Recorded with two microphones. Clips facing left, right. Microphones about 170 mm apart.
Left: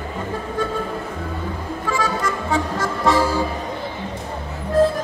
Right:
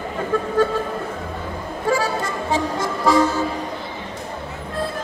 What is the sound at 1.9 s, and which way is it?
Music, 30° right (ahead or behind).